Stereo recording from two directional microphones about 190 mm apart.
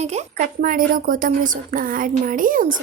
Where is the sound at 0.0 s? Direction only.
35° right (ahead or behind).